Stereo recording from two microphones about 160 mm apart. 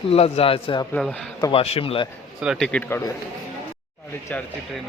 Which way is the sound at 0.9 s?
5° left (ahead or behind).